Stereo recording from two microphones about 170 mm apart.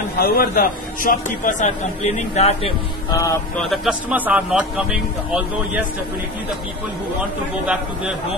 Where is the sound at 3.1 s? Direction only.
15° left (ahead or behind).